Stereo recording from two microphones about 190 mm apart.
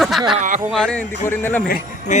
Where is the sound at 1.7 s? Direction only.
40° left (ahead or behind).